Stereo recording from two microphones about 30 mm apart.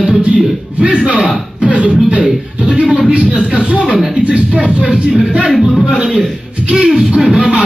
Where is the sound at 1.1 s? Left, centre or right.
Right.